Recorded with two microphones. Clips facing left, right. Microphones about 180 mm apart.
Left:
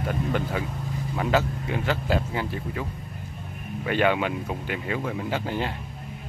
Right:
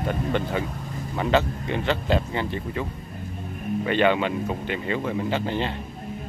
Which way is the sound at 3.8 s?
5° left (ahead or behind).